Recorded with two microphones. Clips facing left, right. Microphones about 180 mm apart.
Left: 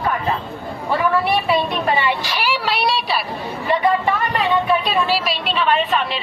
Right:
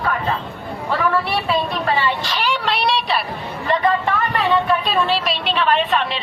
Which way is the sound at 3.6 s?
10° left (ahead or behind).